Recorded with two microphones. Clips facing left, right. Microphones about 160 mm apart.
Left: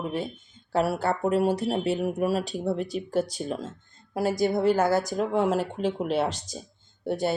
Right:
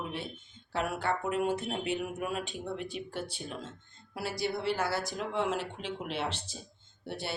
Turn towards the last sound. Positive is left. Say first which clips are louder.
# left 12 dB
turn(degrees=45)  # may be behind; listen again after turning